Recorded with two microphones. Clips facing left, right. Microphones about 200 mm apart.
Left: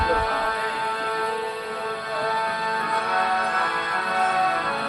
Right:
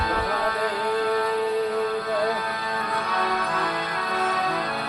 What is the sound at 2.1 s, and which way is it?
Music, 40° right (ahead or behind).